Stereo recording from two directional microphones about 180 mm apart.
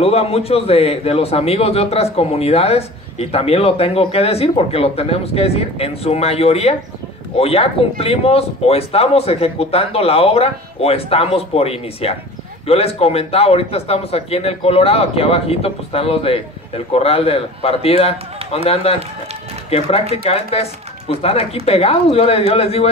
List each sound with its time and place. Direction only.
0.0 s a man's voice: 35° left (ahead or behind)